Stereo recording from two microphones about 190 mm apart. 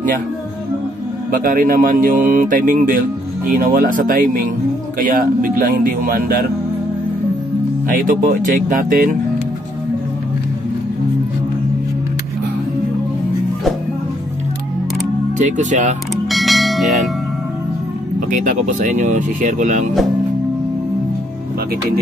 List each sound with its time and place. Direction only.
1.3 s speech: 45° right (ahead or behind)
7.9 s speech: 45° right (ahead or behind)
15.3 s speech: 40° right (ahead or behind)
16.3 s church bell: centre (ahead or behind)
18.3 s speech: 45° right (ahead or behind)